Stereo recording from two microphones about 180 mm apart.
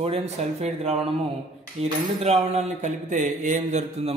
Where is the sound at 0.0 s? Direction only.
35° right (ahead or behind).